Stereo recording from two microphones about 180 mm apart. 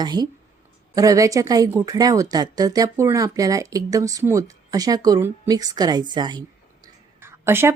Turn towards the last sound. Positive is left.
turn(degrees=-15)  # may be behind; listen again after turning